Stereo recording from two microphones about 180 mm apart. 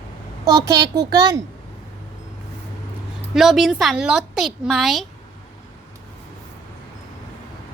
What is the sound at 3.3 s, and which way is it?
A woman's voice, centre (ahead or behind).